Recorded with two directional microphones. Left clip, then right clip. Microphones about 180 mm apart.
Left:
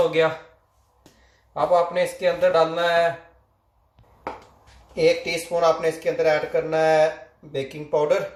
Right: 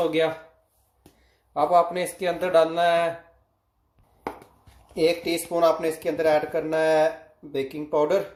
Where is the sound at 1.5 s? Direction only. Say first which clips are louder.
Left 1 dB; 45° right (ahead or behind).